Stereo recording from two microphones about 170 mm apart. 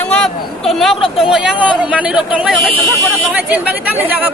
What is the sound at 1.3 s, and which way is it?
Speech, 5° right (ahead or behind).